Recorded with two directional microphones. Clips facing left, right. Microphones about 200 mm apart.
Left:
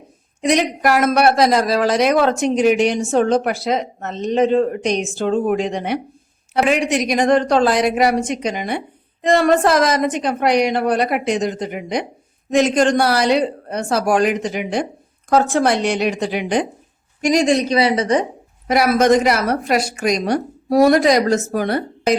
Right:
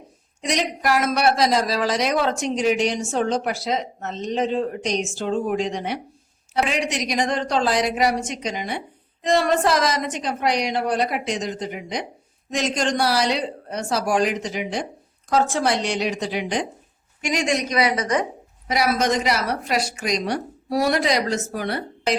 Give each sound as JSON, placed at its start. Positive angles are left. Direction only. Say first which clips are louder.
{"t": 0.4, "sound": "speech", "louder": "left 6 dB", "side_deg": 60}
{"t": 17.2, "sound": "a woman's voice", "louder": "left 8 dB", "side_deg": 35}
{"t": 18.7, "sound": "a woman's voice", "louder": "left 7 dB", "side_deg": 55}